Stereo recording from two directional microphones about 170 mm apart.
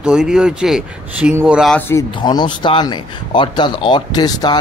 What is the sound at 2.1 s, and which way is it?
Speech, 25° left (ahead or behind).